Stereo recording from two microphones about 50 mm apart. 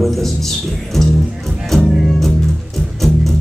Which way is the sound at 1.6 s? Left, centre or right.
Centre.